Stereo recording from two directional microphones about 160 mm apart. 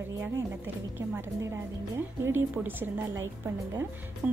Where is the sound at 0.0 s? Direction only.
15° right (ahead or behind).